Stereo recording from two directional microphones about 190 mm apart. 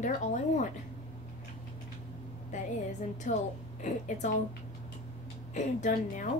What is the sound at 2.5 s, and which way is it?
Speech, 40° left (ahead or behind).